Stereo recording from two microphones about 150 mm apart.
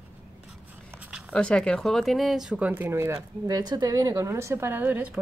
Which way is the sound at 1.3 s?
5° left (ahead or behind).